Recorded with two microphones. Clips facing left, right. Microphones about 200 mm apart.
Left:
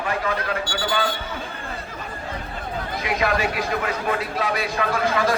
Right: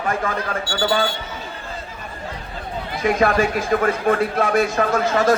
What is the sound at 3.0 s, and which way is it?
Speech, 50° right (ahead or behind).